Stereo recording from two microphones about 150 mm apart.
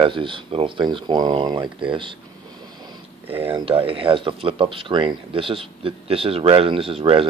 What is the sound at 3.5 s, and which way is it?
Speech, 35° right (ahead or behind).